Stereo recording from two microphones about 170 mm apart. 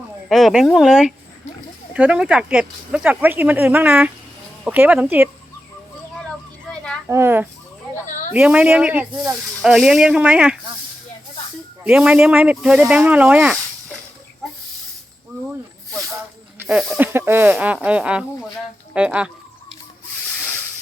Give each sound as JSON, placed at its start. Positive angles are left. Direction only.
{"t": 0.3, "sound": "speech", "side_deg": 0}
{"t": 7.1, "sound": "speech", "side_deg": -15}
{"t": 8.0, "sound": "snake", "side_deg": 45}
{"t": 8.3, "sound": "speech", "side_deg": -5}
{"t": 11.8, "sound": "speech", "side_deg": -5}
{"t": 16.6, "sound": "speech", "side_deg": -5}